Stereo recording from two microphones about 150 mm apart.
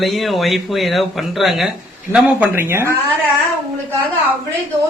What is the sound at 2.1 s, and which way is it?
Speech, 10° right (ahead or behind).